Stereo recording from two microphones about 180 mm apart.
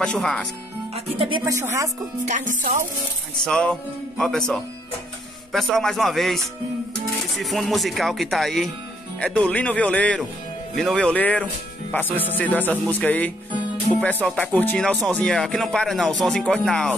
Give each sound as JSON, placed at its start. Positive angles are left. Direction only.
{"t": 0.0, "sound": "speech", "side_deg": 5}
{"t": 1.1, "sound": "speech", "side_deg": -30}
{"t": 1.4, "sound": "a woman's voice", "side_deg": -15}
{"t": 2.2, "sound": "music", "side_deg": -45}
{"t": 3.4, "sound": "speech", "side_deg": 5}